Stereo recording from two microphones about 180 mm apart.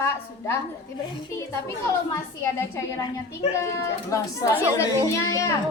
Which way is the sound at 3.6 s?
15° left (ahead or behind).